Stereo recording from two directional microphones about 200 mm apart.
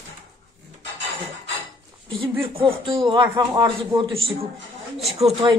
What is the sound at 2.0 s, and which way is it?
Speech, 25° right (ahead or behind).